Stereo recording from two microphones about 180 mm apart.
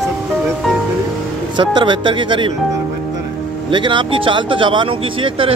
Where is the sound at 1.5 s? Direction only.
25° right (ahead or behind).